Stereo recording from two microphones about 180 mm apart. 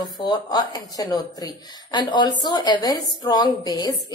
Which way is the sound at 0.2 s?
25° left (ahead or behind).